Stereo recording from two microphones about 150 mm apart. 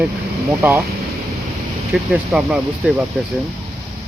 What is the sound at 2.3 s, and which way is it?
Speech, 5° right (ahead or behind).